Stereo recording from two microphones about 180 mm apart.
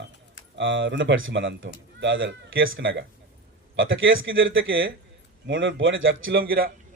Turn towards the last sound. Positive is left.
turn(degrees=-55)  # may be behind; listen again after turning